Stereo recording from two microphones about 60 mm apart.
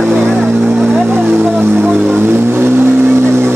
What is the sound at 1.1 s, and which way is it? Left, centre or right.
Vehicle, right.